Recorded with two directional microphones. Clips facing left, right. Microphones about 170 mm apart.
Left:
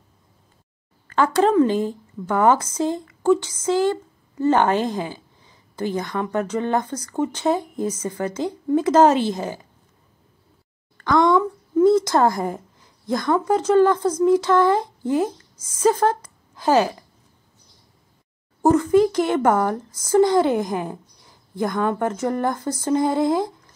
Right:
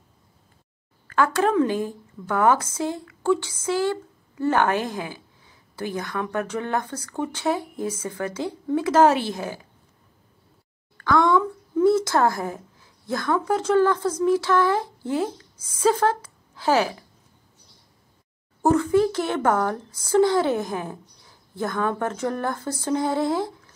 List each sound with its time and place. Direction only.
1.1 s a woman's voice: 20° left (ahead or behind)
11.1 s a woman's voice: 15° left (ahead or behind)
18.6 s speech: 10° left (ahead or behind)